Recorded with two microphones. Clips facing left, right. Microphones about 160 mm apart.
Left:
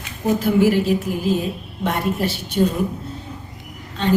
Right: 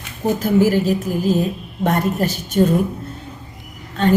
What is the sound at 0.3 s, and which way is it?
A woman's voice, 40° right (ahead or behind).